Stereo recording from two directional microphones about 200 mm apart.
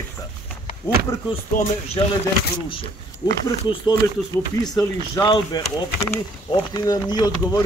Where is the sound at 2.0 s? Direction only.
25° left (ahead or behind).